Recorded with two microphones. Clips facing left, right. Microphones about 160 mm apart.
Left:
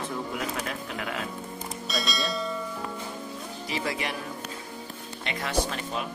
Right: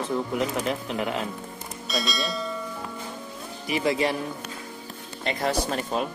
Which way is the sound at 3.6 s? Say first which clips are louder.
Right 7 dB; 15° right (ahead or behind).